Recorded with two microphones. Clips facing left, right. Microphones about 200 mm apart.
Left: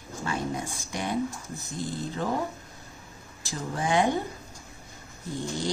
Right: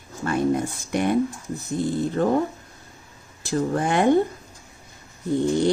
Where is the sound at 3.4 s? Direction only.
60° right (ahead or behind).